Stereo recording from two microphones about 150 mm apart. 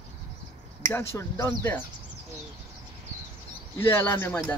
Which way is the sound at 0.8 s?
15° left (ahead or behind).